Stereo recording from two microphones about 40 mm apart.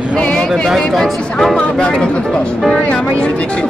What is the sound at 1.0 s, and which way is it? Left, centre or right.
Speech, centre.